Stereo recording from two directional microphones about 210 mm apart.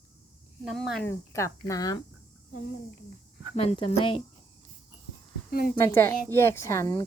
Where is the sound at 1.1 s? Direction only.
15° left (ahead or behind).